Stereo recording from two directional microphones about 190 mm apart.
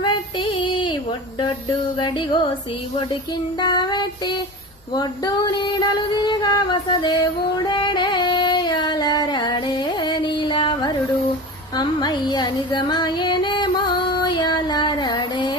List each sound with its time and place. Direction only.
0.0 s child singing: 25° left (ahead or behind)
2.0 s child singing: 25° left (ahead or behind)
3.6 s child singing: 20° left (ahead or behind)
4.9 s female singing: 20° left (ahead or behind)
11.8 s music: 25° left (ahead or behind)